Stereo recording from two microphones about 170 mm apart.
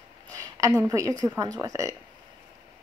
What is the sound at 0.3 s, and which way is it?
A woman's voice, 20° right (ahead or behind).